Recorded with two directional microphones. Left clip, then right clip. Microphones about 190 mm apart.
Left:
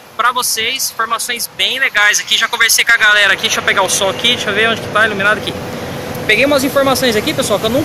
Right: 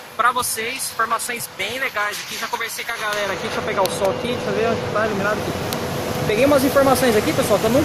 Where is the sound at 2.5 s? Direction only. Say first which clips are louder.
Left 16 dB; 5° right (ahead or behind).